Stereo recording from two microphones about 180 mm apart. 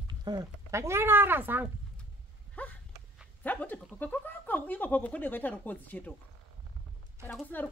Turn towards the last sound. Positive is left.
turn(degrees=10)  # may be behind; listen again after turning